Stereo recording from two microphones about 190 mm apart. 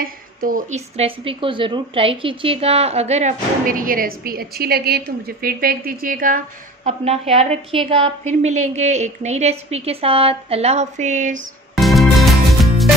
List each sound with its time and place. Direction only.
0.0 s a woman's voice: 50° right (ahead or behind)
11.7 s music: centre (ahead or behind)